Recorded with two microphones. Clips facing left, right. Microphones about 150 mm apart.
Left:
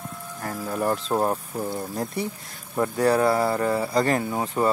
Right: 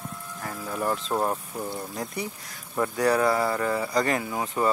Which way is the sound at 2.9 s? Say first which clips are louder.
Left 2 dB; 30° left (ahead or behind).